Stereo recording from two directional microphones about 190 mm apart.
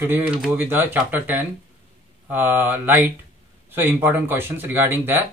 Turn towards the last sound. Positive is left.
turn(degrees=-10)  # may be behind; listen again after turning